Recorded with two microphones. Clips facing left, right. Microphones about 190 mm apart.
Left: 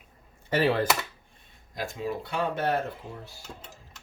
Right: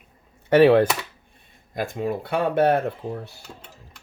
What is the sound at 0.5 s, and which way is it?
Speech, 65° right (ahead or behind).